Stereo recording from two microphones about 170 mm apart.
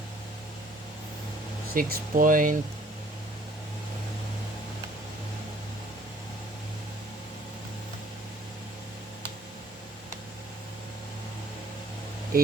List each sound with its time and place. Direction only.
1.7 s speech: 55° right (ahead or behind)
12.3 s speech: 60° right (ahead or behind)